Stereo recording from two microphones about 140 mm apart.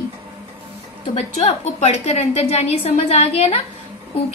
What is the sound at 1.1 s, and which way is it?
A woman's voice, 50° left (ahead or behind).